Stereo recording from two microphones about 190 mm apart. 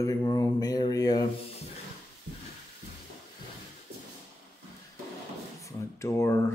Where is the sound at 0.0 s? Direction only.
20° left (ahead or behind).